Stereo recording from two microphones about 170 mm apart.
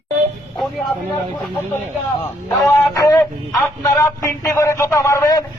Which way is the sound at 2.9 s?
20° left (ahead or behind).